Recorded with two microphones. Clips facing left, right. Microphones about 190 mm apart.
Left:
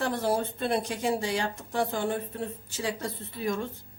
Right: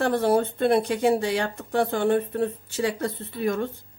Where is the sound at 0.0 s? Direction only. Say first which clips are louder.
Right 6 dB; 60° right (ahead or behind).